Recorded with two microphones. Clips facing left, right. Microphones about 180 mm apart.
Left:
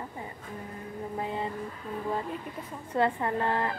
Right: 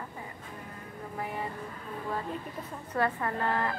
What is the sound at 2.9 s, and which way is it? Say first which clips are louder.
Speech: left 3 dB; 25° left (ahead or behind).